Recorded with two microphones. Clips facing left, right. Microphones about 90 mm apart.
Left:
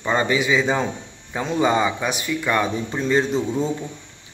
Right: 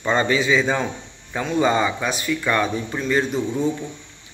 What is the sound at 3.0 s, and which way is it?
Speech, 30° left (ahead or behind).